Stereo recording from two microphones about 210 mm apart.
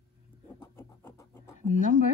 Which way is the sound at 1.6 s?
40° left (ahead or behind).